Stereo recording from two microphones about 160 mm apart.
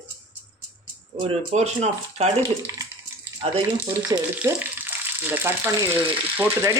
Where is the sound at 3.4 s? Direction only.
40° right (ahead or behind).